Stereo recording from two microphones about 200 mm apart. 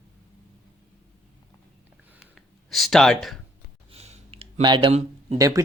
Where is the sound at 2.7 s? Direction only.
Centre (ahead or behind).